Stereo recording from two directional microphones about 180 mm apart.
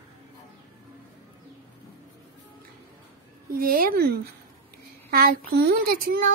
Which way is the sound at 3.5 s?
55° right (ahead or behind).